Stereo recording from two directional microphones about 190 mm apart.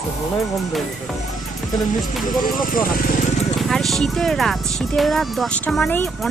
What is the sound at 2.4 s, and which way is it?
Speech, 45° left (ahead or behind).